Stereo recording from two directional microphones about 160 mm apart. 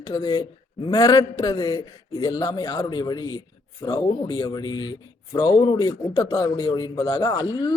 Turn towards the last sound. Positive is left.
turn(degrees=30)  # may be behind; listen again after turning